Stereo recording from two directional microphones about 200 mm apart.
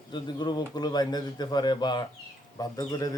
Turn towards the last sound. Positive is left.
turn(degrees=20)  # may be behind; listen again after turning